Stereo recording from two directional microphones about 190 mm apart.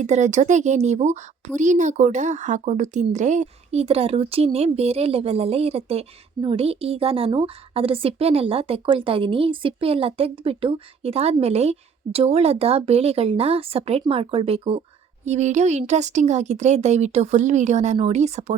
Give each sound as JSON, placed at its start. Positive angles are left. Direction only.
{"t": 0.0, "sound": "speech", "side_deg": -40}